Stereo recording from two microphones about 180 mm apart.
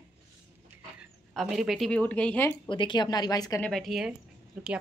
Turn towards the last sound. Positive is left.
turn(degrees=-5)  # may be behind; listen again after turning